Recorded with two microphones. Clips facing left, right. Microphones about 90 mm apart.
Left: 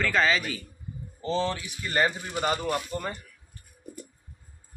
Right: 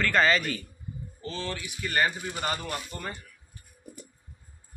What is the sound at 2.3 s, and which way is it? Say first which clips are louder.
Speech: left 5 dB; 15° left (ahead or behind).